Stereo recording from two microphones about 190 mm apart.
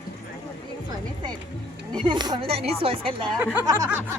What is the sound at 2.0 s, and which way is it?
Speech, 25° right (ahead or behind).